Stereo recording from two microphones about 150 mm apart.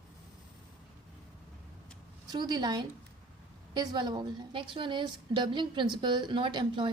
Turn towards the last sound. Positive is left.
turn(degrees=-30)  # may be behind; listen again after turning